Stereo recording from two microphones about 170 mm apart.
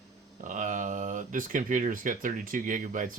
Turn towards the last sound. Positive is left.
turn(degrees=-50)  # may be behind; listen again after turning